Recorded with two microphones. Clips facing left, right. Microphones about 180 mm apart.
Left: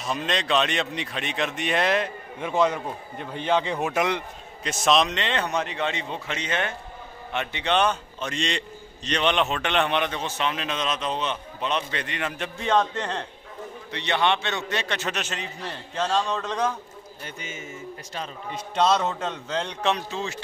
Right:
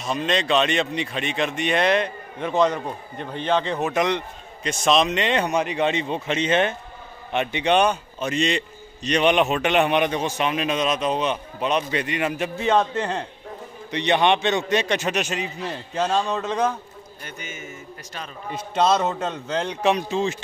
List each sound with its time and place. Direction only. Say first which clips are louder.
0.0 s speech: right 4 dB; centre (ahead or behind)
5.1 s a man's voice: right 5 dB; 15° right (ahead or behind)
13.9 s a man's voice: right 5 dB; 20° right (ahead or behind)
17.2 s a man's voice: right 1 dB; 25° left (ahead or behind)
18.5 s a man's voice: right 2 dB; 5° right (ahead or behind); by 20.4 s 20° right (ahead or behind)